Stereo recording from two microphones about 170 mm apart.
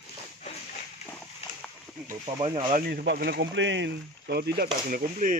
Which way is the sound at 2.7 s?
65° right (ahead or behind).